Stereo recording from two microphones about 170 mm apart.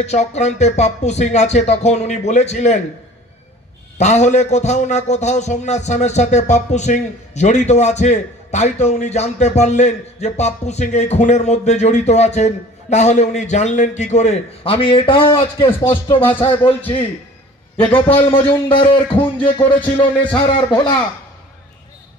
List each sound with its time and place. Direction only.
0.0 s speech: 40° left (ahead or behind)
4.0 s a man's voice: 40° left (ahead or behind)
15.8 s music: 25° left (ahead or behind)
18.7 s music: 30° left (ahead or behind)